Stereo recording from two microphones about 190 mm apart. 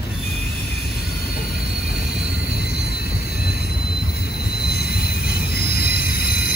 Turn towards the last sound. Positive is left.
turn(degrees=55)  # may be behind; listen again after turning